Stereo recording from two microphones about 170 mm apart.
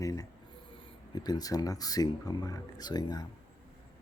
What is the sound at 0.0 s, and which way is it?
Speech, 20° left (ahead or behind).